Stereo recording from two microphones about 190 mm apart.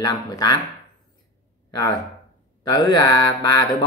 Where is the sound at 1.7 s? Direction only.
20° left (ahead or behind).